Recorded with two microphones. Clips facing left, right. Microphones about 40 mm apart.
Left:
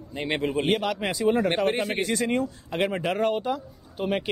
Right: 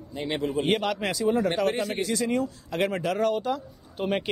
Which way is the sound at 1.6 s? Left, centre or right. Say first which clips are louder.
Left 1 dB; left.